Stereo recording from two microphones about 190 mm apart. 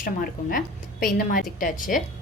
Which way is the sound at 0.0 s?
50° left (ahead or behind).